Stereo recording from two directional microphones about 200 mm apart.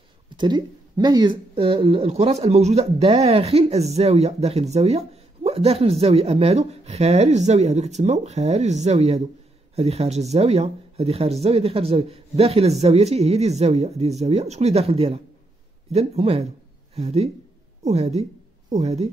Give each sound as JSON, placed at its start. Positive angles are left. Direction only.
{"t": 0.4, "sound": "speech", "side_deg": -20}